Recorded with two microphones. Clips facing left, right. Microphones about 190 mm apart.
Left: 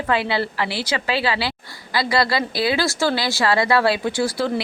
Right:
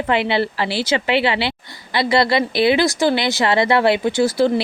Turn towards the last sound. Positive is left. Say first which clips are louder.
# right 5 dB
turn(degrees=-25)  # may be behind; listen again after turning